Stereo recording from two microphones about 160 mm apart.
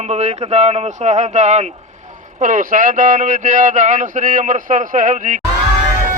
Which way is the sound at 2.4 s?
55° right (ahead or behind).